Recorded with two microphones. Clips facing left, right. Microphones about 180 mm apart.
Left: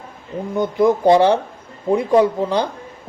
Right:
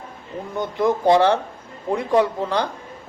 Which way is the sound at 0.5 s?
20° left (ahead or behind).